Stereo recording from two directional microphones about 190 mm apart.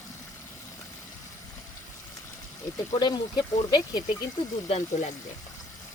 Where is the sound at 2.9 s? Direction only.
20° left (ahead or behind).